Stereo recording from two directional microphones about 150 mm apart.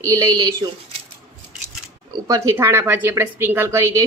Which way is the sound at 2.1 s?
25° right (ahead or behind).